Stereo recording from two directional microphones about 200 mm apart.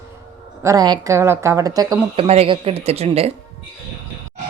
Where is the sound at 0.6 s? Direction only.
15° right (ahead or behind).